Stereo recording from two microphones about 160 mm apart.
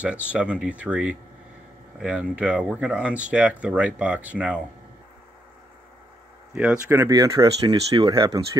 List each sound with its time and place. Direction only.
0.0 s speech: 10° right (ahead or behind)
6.5 s speech: 5° right (ahead or behind); by 8.4 s 25° right (ahead or behind)